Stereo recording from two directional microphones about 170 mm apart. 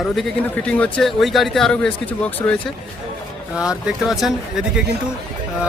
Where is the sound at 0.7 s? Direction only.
5° left (ahead or behind).